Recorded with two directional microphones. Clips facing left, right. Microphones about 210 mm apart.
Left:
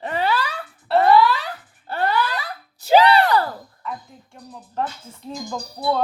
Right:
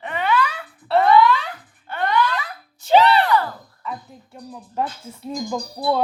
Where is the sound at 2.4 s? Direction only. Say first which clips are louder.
Even; 35° left (ahead or behind).